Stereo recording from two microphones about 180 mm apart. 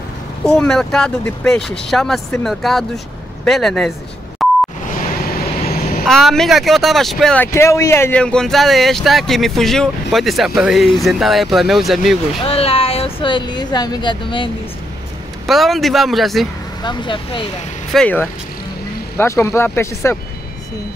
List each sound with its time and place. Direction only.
0.5 s speech: 5° left (ahead or behind)
4.4 s beep: centre (ahead or behind)
5.7 s vehicle: 55° left (ahead or behind)
6.0 s speech: centre (ahead or behind)
7.5 s speech: 15° left (ahead or behind); by 12.4 s centre (ahead or behind)
12.4 s speech: 30° left (ahead or behind)
15.4 s speech: centre (ahead or behind)
16.8 s speech: 25° left (ahead or behind)
17.9 s speech: 10° left (ahead or behind)